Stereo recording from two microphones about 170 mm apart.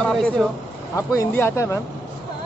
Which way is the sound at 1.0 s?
15° left (ahead or behind).